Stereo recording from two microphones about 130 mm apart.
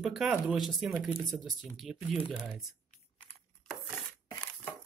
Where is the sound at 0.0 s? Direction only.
Centre (ahead or behind).